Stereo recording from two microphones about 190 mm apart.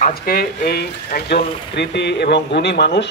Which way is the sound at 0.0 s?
50° left (ahead or behind).